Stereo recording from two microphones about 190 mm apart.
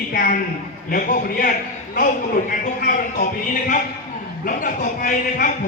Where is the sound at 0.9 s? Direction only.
45° left (ahead or behind).